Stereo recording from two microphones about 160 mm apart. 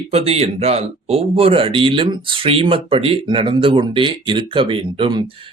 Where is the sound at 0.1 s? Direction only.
40° right (ahead or behind).